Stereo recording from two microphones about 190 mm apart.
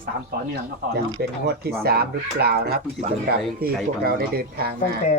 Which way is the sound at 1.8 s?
55° right (ahead or behind).